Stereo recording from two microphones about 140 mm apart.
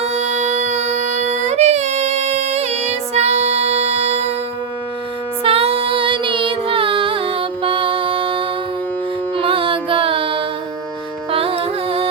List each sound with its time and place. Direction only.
0.0 s music: 55° right (ahead or behind)
5.4 s music: 40° right (ahead or behind)